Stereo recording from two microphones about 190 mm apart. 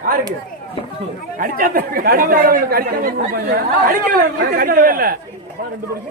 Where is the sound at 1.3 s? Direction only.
45° right (ahead or behind).